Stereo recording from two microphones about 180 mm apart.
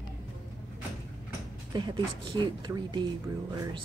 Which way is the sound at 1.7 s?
25° right (ahead or behind).